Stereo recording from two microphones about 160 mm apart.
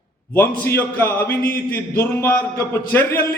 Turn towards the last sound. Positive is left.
turn(degrees=15)  # may be behind; listen again after turning